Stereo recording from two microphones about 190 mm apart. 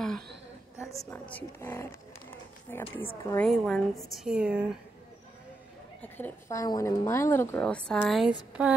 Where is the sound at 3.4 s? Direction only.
Centre (ahead or behind).